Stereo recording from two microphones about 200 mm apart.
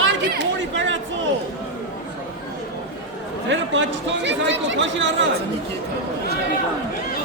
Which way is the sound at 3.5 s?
65° right (ahead or behind).